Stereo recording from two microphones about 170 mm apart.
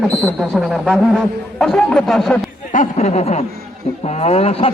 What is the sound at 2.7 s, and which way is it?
Speech, 45° left (ahead or behind).